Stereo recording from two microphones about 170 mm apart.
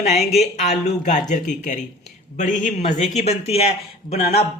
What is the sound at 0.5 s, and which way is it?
Speech, 45° left (ahead or behind).